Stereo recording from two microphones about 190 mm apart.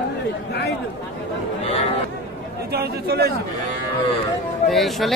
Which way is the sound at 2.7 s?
55° right (ahead or behind).